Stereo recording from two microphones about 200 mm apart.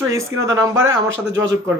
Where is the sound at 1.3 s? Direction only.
65° right (ahead or behind).